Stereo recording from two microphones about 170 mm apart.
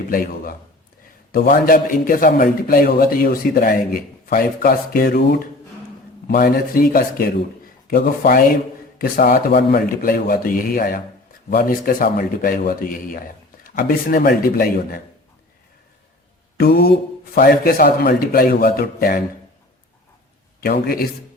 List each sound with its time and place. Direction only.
0.1 s a man's voice: 60° left (ahead or behind)
16.6 s a man's voice: 60° left (ahead or behind)
20.6 s a man's voice: 60° left (ahead or behind)